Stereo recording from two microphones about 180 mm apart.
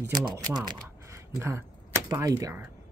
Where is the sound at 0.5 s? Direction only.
25° right (ahead or behind).